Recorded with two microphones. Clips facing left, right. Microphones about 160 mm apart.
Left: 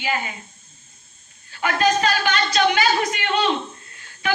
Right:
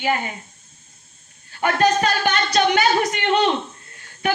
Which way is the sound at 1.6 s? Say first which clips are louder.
Right 2 dB; 50° right (ahead or behind).